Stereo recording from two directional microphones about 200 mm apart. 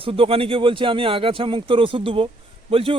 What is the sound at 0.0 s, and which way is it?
Speech, 25° right (ahead or behind).